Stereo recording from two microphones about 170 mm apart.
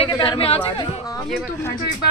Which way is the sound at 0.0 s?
30° left (ahead or behind).